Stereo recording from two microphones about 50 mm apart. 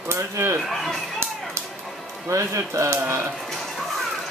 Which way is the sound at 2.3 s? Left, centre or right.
Right.